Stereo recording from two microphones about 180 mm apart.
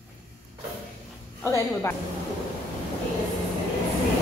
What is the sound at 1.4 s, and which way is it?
Speech, 15° left (ahead or behind).